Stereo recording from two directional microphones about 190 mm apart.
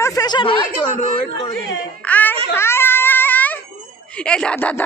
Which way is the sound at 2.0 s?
10° left (ahead or behind).